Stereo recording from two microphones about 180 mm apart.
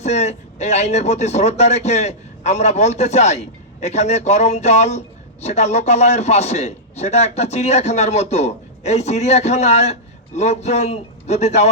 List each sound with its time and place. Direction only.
0.0 s speech: 40° left (ahead or behind)